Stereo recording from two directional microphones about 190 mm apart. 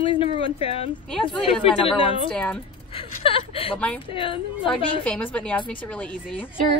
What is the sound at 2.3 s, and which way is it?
Speech, 5° left (ahead or behind).